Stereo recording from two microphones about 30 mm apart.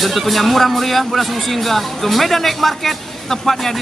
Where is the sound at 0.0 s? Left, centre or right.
Centre.